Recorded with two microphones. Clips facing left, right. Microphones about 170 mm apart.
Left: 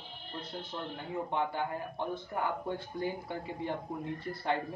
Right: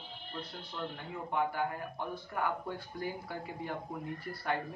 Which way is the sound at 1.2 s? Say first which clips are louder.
Right 2 dB; 25° left (ahead or behind).